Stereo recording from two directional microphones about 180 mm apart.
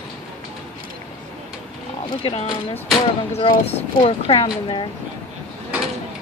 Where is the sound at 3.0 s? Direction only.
30° left (ahead or behind).